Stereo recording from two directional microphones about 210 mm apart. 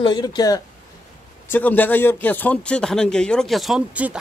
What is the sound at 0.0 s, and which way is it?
Speech, 20° left (ahead or behind).